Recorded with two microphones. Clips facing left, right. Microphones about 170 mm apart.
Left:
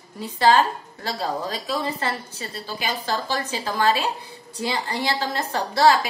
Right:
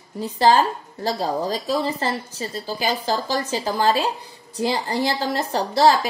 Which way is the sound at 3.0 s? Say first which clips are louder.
Right 3 dB; 35° right (ahead or behind).